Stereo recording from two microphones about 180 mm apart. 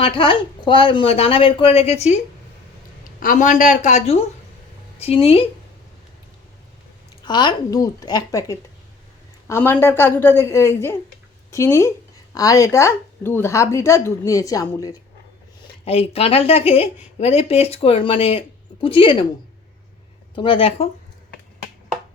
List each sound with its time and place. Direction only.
0.0 s speech: 30° left (ahead or behind)
7.3 s speech: 25° left (ahead or behind)
15.8 s speech: 30° left (ahead or behind)
20.3 s speech: 25° left (ahead or behind)